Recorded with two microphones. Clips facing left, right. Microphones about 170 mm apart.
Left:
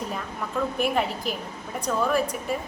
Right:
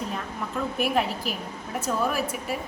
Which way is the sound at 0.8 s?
Centre (ahead or behind).